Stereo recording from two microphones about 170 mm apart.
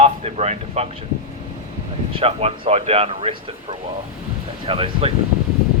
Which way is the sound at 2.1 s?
35° right (ahead or behind).